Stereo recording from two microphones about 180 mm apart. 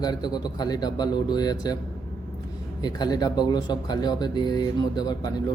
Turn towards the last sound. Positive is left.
turn(degrees=20)  # may be behind; listen again after turning